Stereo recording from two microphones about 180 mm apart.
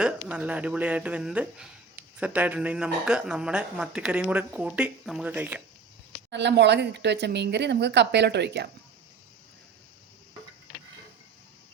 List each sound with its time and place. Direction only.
0.0 s speech: 5° right (ahead or behind)
6.3 s speech: 75° right (ahead or behind)